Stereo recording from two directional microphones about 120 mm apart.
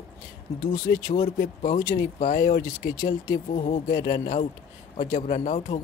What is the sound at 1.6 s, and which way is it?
Speech, 90° left.